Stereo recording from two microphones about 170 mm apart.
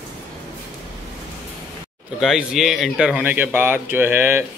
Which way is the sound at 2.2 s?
5° right (ahead or behind).